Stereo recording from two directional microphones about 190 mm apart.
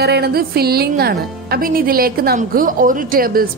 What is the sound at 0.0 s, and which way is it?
Speech, 60° right (ahead or behind).